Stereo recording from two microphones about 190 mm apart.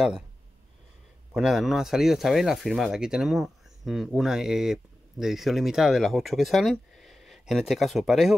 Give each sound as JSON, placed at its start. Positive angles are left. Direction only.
{"t": 1.3, "sound": "speech", "side_deg": -5}